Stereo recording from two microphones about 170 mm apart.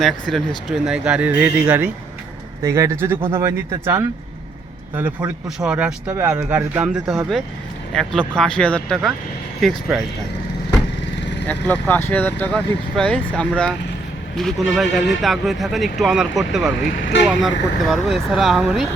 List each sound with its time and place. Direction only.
0.0 s a man's voice: centre (ahead or behind)
11.4 s a man's voice: 10° left (ahead or behind)